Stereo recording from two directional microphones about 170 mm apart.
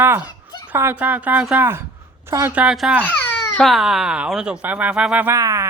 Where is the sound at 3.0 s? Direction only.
10° left (ahead or behind).